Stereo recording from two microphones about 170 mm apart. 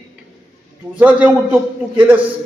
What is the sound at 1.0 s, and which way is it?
A man's voice, 10° right (ahead or behind).